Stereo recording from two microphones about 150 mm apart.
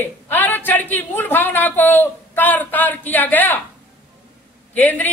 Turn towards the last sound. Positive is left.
turn(degrees=10)  # may be behind; listen again after turning